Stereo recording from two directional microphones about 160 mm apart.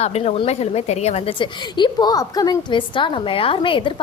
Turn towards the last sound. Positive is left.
turn(degrees=30)  # may be behind; listen again after turning